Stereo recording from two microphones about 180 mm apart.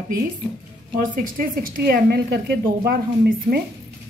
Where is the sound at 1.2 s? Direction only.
50° right (ahead or behind).